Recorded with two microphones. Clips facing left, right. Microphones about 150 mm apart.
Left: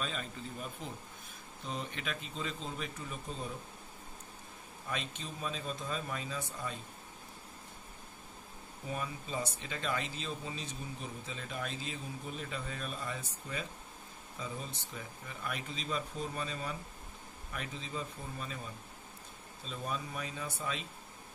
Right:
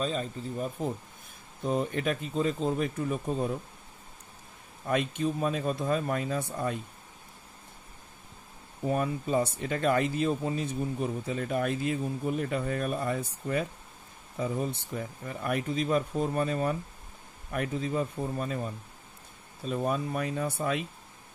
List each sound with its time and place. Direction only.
0.0 s speech: 35° right (ahead or behind); by 3.5 s 55° right (ahead or behind)
4.8 s speech: 55° right (ahead or behind)
8.8 s speech: 55° right (ahead or behind)